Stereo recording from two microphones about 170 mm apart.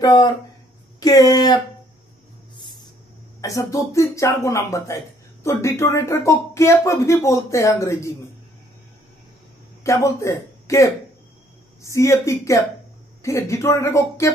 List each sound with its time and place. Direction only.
0.0 s speech: 25° left (ahead or behind)
3.3 s speech: 20° left (ahead or behind)
9.8 s a man's voice: 15° left (ahead or behind)